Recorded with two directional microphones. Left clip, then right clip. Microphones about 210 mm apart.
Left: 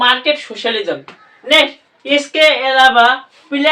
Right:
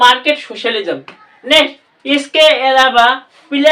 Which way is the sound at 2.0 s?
40° right (ahead or behind).